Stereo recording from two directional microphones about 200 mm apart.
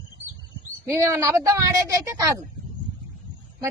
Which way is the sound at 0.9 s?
15° right (ahead or behind).